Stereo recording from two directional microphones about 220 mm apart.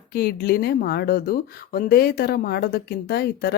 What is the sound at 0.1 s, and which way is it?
Speech, 45° left (ahead or behind).